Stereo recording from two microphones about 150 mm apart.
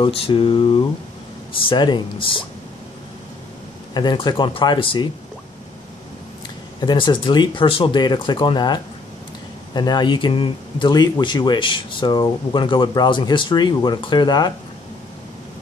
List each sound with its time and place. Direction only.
0.0 s speech: 35° left (ahead or behind)
3.9 s speech: 30° left (ahead or behind)
6.8 s speech: 30° left (ahead or behind)